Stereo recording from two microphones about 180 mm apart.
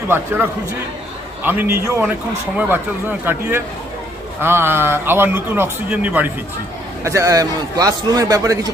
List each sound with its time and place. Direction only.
1.5 s a man's voice: 10° right (ahead or behind)